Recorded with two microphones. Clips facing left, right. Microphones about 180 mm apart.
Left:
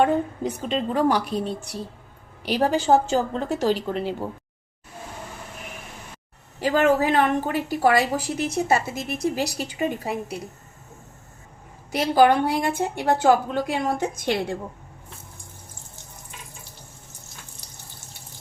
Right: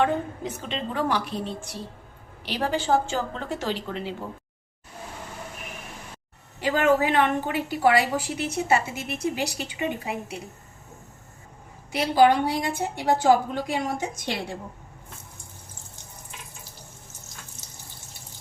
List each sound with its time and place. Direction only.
0.0 s a woman's voice: 40° left (ahead or behind)
6.6 s a woman's voice: 40° left (ahead or behind)
11.9 s a woman's voice: 45° left (ahead or behind)